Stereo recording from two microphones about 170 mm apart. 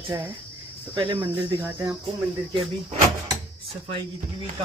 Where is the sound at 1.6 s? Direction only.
15° right (ahead or behind).